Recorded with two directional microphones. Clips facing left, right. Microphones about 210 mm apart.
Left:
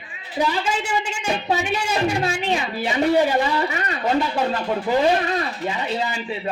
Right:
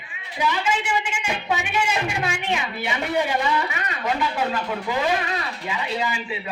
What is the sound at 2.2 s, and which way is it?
Speech, 35° left (ahead or behind).